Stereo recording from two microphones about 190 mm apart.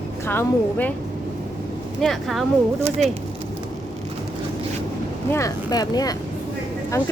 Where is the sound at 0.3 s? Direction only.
10° left (ahead or behind).